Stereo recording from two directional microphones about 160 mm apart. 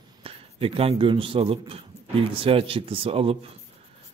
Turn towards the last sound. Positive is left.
turn(degrees=-35)  # may be behind; listen again after turning